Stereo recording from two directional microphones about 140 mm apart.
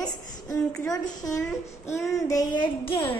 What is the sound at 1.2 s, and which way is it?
Child singing, 25° left (ahead or behind).